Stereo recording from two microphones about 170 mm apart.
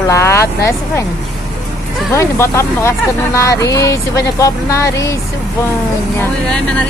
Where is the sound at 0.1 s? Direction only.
15° left (ahead or behind).